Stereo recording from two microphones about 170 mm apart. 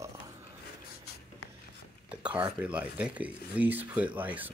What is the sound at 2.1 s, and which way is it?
Speech, 5° right (ahead or behind).